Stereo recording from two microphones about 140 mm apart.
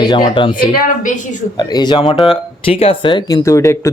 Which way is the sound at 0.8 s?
65° left (ahead or behind).